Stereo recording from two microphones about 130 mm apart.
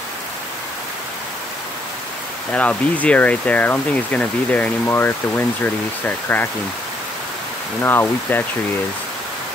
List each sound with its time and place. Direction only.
2.5 s speech: 10° left (ahead or behind)
7.8 s speech: 15° left (ahead or behind)